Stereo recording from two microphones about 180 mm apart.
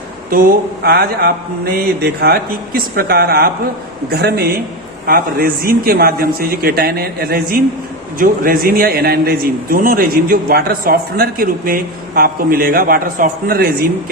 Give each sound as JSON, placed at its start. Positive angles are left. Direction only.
{"t": 0.3, "sound": "a man's voice", "side_deg": -50}